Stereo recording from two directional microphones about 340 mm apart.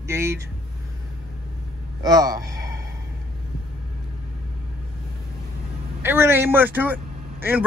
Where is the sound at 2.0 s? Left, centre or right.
Centre.